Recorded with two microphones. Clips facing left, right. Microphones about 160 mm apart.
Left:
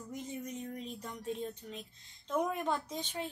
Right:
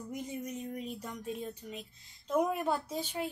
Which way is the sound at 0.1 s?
10° right (ahead or behind).